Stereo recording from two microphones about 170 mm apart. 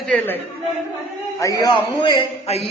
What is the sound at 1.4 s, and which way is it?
Speech, 20° left (ahead or behind).